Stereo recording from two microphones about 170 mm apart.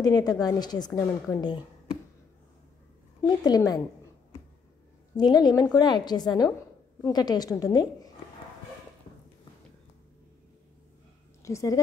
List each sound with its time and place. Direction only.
0.0 s a woman's voice: 25° left (ahead or behind)
3.2 s a woman's voice: 25° left (ahead or behind)
5.1 s a woman's voice: 25° left (ahead or behind)
11.4 s a woman's voice: 20° left (ahead or behind)